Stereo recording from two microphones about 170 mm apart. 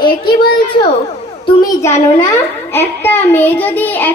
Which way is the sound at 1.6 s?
20° left (ahead or behind).